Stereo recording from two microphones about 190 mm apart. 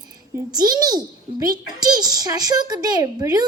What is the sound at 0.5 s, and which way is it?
A child's voice, 20° right (ahead or behind).